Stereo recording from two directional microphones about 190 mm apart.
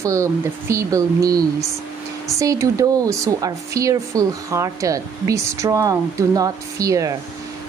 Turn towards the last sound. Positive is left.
turn(degrees=-15)  # may be behind; listen again after turning